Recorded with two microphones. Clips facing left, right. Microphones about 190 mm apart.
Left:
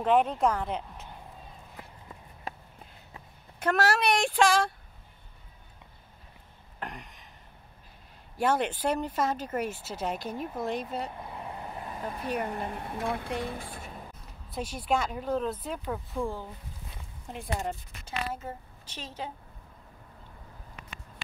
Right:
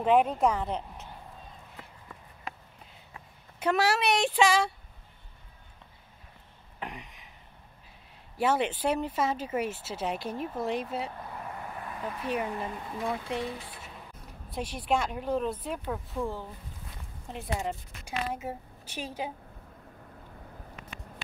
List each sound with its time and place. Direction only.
0.0 s speech: 5° right (ahead or behind)
3.5 s speech: 5° right (ahead or behind)
6.8 s a sound: 5° right (ahead or behind)
8.4 s speech: 5° right (ahead or behind)
11.1 s vehicle: 15° left (ahead or behind)
12.4 s speech: 45° left (ahead or behind)
14.5 s speech: 5° left (ahead or behind)
14.8 s a woman's voice: 5° right (ahead or behind)